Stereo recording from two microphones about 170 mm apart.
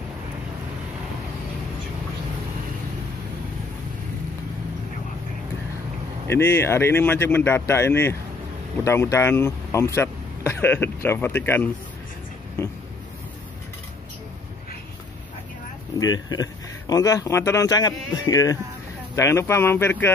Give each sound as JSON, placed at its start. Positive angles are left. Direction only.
{"t": 6.2, "sound": "speech", "side_deg": 15}
{"t": 16.0, "sound": "speech", "side_deg": 20}